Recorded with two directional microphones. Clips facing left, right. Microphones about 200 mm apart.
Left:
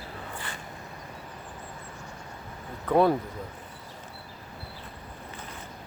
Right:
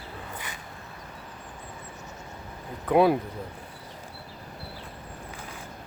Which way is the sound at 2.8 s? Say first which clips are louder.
Right 1 dB; 10° right (ahead or behind).